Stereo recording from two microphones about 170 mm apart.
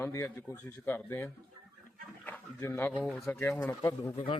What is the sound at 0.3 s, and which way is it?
Speech, 10° left (ahead or behind).